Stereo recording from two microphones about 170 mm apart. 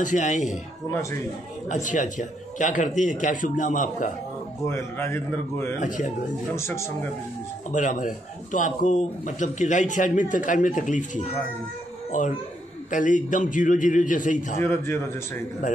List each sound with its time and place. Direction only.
0.0 s speech: 45° left (ahead or behind)
1.7 s speech: 50° left (ahead or behind)
4.6 s a man's voice: 15° left (ahead or behind)
5.8 s speech: 50° left (ahead or behind)
6.5 s a man's voice: 15° left (ahead or behind)
7.7 s speech: 50° left (ahead or behind)
12.1 s speech: 50° left (ahead or behind)
14.6 s a man's voice: 15° left (ahead or behind)